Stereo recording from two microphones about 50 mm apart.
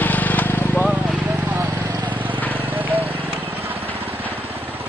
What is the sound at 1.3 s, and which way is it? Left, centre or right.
Clip-clop, right.